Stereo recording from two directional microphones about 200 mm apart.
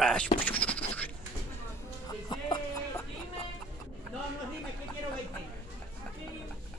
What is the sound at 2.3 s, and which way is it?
Music, 25° left (ahead or behind).